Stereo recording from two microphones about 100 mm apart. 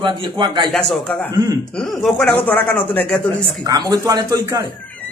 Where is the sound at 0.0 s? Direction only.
50° right (ahead or behind).